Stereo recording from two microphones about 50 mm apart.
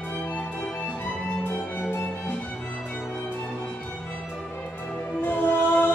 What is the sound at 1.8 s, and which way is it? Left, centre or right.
Music, left.